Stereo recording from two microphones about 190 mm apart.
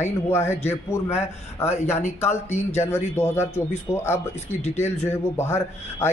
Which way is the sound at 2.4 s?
35° left (ahead or behind).